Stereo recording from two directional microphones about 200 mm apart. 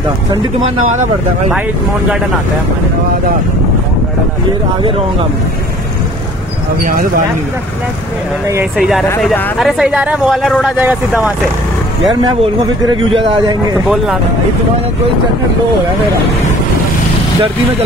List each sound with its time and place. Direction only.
6.8 s speech: 45° right (ahead or behind)
8.7 s speech: centre (ahead or behind)